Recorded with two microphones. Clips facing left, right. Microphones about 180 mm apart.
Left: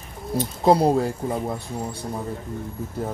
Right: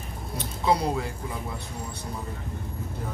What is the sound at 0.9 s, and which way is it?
Speech, 50° left (ahead or behind).